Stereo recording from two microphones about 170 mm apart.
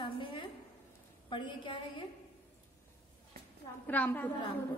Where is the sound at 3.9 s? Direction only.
10° left (ahead or behind).